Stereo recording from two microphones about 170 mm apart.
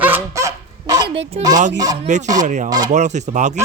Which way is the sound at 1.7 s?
20° right (ahead or behind).